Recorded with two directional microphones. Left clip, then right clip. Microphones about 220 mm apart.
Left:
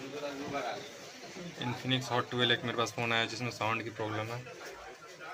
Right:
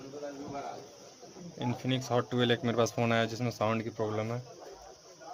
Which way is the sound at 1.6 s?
45° right (ahead or behind).